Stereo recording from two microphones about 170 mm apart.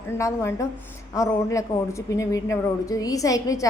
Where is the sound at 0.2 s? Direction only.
20° left (ahead or behind).